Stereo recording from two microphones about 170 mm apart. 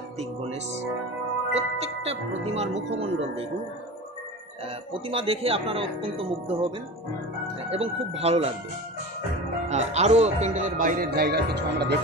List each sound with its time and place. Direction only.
0.2 s speech: 40° right (ahead or behind)
5.0 s speech: 30° right (ahead or behind)
7.7 s speech: 35° right (ahead or behind)
9.7 s a man's voice: 40° right (ahead or behind); by 12.0 s 80° right